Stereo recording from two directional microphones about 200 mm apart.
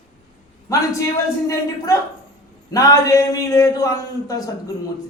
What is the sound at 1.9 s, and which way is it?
A man's voice, 15° left (ahead or behind).